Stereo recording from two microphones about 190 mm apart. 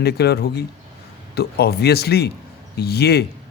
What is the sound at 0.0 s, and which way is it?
Speech, 60° left (ahead or behind).